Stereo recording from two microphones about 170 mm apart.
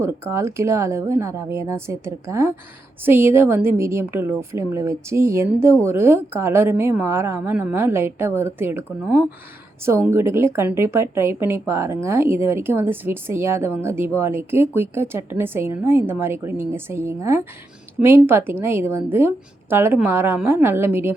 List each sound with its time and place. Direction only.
0.0 s speech: 15° right (ahead or behind)